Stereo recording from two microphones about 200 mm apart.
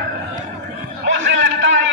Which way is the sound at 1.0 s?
65° right (ahead or behind).